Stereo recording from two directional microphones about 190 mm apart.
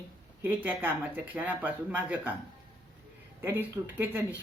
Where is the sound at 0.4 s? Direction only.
10° right (ahead or behind).